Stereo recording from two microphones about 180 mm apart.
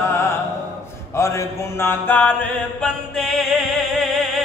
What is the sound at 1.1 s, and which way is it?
Mantra, 15° left (ahead or behind).